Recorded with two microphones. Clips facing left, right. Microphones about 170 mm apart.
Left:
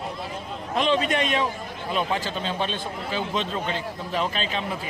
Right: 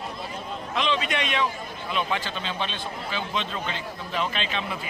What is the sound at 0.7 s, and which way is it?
A man's voice, 45° left (ahead or behind).